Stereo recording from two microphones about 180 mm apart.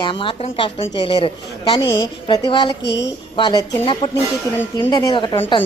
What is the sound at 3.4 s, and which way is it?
Speech, 25° left (ahead or behind).